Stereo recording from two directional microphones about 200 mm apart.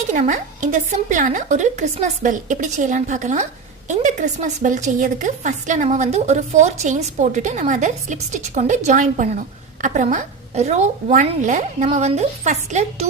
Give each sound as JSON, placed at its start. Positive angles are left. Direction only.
{"t": 0.1, "sound": "a woman's voice", "side_deg": -40}